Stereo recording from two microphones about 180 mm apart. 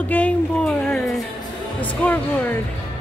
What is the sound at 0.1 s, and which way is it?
Speech, 10° left (ahead or behind).